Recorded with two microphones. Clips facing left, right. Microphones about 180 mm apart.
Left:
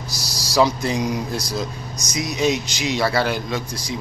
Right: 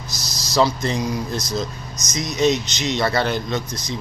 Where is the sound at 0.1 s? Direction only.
35° left (ahead or behind).